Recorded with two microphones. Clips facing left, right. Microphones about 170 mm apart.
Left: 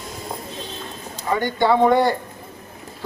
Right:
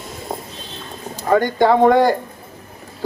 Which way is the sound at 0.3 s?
50° right (ahead or behind).